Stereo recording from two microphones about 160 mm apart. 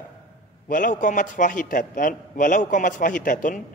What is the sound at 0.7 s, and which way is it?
A man's voice, 55° left (ahead or behind).